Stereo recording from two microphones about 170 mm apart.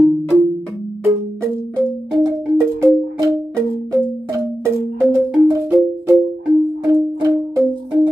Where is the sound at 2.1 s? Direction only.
20° right (ahead or behind).